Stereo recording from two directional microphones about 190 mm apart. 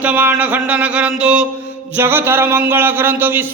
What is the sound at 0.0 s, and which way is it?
Speech, 10° right (ahead or behind).